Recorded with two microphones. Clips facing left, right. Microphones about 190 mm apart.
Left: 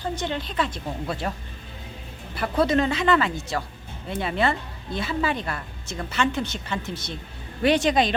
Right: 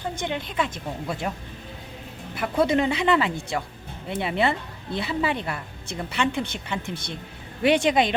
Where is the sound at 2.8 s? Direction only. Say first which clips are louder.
Even; 20° right (ahead or behind).